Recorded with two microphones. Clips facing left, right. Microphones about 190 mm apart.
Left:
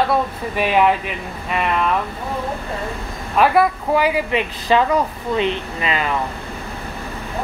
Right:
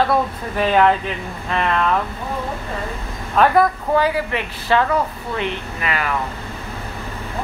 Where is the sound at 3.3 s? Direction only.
5° left (ahead or behind).